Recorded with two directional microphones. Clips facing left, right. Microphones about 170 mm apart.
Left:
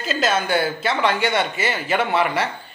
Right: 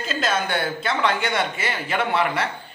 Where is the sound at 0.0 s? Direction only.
5° left (ahead or behind).